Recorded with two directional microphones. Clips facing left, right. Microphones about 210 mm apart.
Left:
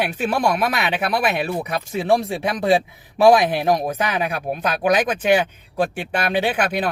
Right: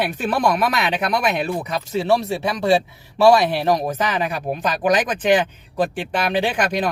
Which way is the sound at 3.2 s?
15° left (ahead or behind).